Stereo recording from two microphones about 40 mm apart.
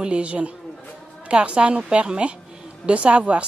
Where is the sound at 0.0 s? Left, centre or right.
Right.